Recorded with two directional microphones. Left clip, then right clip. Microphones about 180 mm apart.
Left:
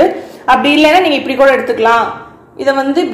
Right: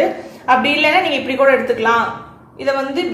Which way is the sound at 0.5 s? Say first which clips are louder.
Left 5 dB; 35° left (ahead or behind).